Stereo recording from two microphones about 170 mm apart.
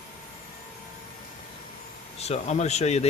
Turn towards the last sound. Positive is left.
turn(degrees=40)  # may be behind; listen again after turning